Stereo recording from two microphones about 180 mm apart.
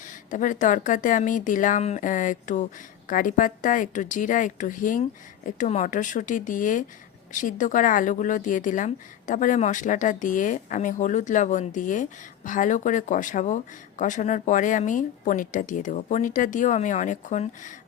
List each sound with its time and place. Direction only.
0.0 s speech: 45° left (ahead or behind)